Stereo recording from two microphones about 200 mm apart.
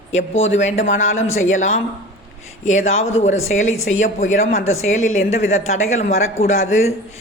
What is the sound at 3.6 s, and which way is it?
Speech, 90° left.